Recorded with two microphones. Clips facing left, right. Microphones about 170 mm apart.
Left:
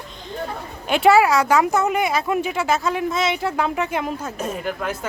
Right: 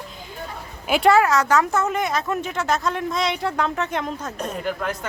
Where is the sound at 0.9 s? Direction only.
5° right (ahead or behind).